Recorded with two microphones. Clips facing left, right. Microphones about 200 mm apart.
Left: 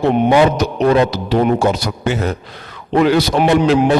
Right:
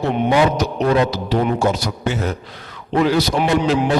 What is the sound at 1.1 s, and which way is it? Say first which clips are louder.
A man's voice: left 4 dB; 65° left (ahead or behind).